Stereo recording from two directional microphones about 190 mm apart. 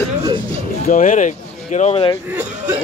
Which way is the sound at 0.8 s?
40° left (ahead or behind).